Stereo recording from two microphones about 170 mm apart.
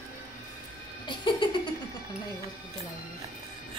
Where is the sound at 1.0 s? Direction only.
30° left (ahead or behind).